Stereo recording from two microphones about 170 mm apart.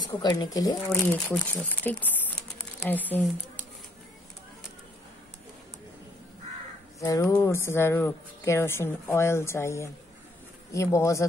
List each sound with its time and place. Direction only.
0.2 s speech: 25° left (ahead or behind)
0.8 s speech: 5° left (ahead or behind)
7.0 s speech: 20° left (ahead or behind)